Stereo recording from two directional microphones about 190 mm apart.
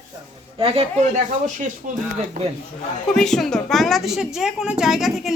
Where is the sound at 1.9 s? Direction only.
45° right (ahead or behind).